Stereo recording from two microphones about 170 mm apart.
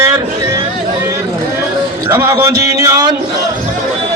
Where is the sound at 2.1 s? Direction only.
15° right (ahead or behind).